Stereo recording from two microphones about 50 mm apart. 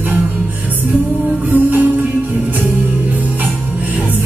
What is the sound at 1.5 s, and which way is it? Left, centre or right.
Music, right.